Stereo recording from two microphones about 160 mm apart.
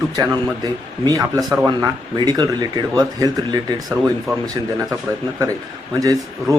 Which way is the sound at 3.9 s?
5° right (ahead or behind).